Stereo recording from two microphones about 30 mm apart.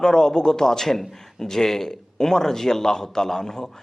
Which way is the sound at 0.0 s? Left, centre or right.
Left.